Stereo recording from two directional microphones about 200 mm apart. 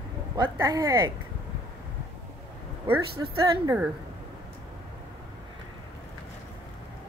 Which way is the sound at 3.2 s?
15° right (ahead or behind).